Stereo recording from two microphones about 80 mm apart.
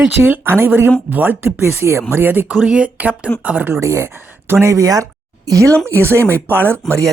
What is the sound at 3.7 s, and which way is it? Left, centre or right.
Speech, right.